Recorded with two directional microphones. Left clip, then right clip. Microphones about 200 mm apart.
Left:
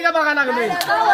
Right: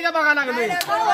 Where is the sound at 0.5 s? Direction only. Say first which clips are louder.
Left 2 dB; 35° right (ahead or behind).